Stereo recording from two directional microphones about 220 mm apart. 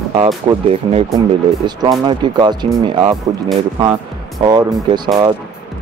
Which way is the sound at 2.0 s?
20° right (ahead or behind).